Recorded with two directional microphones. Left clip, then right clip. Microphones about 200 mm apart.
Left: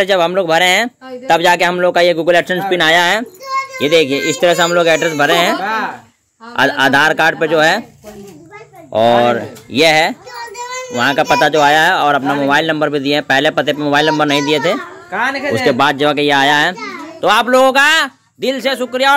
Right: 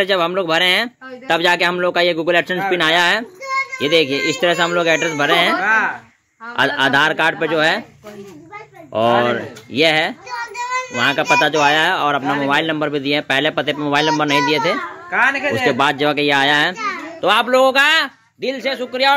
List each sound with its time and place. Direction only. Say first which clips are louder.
0.0 s speech: left 4 dB; 5° left (ahead or behind)
8.9 s speech: left 5 dB; 10° left (ahead or behind)
10.5 s child singing: right 1 dB; 20° left (ahead or behind)
11.0 s speech: left 3 dB; 5° left (ahead or behind)
18.4 s speech: left 5 dB; 20° left (ahead or behind)